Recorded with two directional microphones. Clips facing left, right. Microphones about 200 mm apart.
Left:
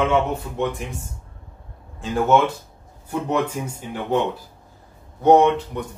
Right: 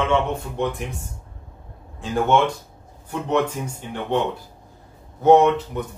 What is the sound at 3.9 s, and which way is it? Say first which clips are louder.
Speech: left 1 dB; 5° left (ahead or behind).